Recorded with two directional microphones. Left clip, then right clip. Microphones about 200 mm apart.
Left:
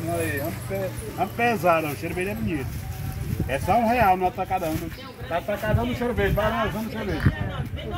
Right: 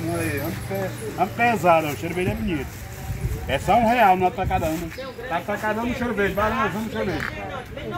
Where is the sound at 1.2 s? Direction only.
Centre (ahead or behind).